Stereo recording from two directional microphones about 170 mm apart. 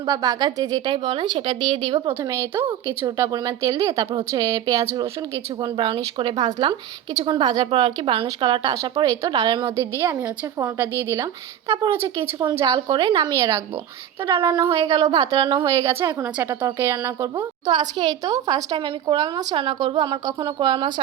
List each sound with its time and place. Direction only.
0.1 s a woman's voice: 20° right (ahead or behind)
14.4 s a woman's voice: 20° right (ahead or behind)